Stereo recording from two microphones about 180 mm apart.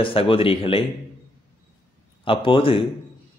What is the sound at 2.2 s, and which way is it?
Speech, 30° left (ahead or behind).